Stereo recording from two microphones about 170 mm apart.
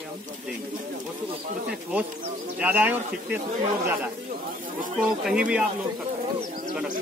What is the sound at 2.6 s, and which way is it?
Speech, 10° right (ahead or behind).